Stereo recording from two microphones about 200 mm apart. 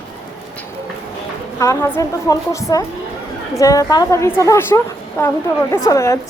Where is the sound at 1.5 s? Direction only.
15° left (ahead or behind).